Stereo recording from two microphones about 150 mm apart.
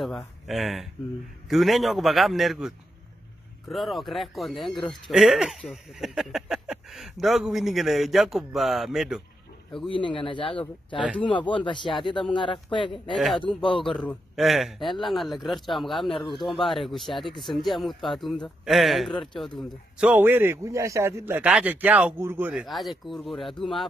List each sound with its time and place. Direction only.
0.5 s speech: centre (ahead or behind)
9.8 s speech: 35° left (ahead or behind)
13.1 s speech: centre (ahead or behind); by 22.5 s 15° right (ahead or behind)
22.5 s speech: centre (ahead or behind)